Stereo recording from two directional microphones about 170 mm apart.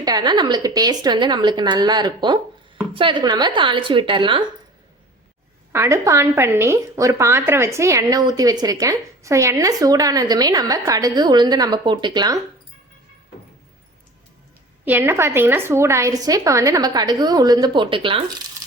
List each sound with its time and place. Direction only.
0.0 s a woman's voice: 25° right (ahead or behind)
5.7 s a woman's voice: 15° right (ahead or behind)
14.8 s a woman's voice: 10° right (ahead or behind); by 18.2 s 30° right (ahead or behind)